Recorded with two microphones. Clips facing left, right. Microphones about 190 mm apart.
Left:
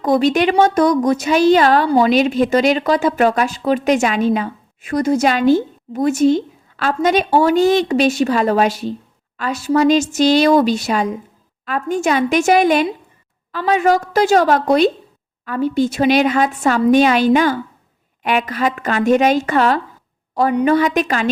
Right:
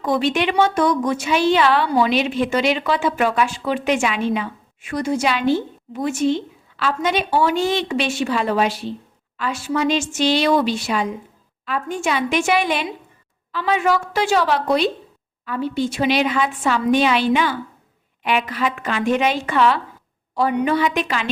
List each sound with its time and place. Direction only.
0.0 s a woman's voice: 40° left (ahead or behind)